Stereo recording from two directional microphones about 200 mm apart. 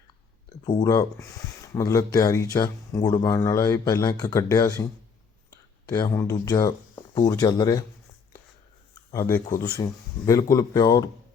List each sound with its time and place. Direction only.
0.8 s speech: 20° left (ahead or behind)
9.1 s speech: 15° left (ahead or behind)